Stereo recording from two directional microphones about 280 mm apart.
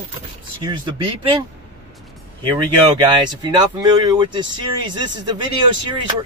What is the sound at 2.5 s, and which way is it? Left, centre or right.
Speech, centre.